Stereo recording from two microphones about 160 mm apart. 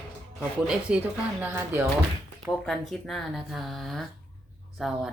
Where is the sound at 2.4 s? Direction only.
5° left (ahead or behind).